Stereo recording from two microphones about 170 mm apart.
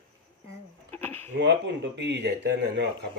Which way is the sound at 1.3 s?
90° right.